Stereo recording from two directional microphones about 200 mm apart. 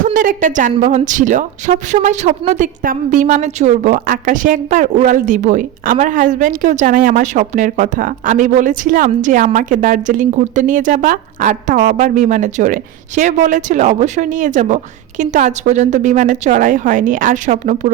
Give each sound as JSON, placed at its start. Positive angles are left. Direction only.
{"t": 0.0, "sound": "a woman's voice", "side_deg": -40}